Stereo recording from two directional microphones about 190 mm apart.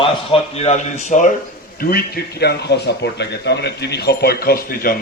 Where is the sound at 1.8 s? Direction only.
50° left (ahead or behind).